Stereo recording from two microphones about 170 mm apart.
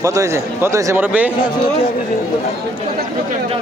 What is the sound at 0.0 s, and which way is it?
A man's voice, 20° right (ahead or behind).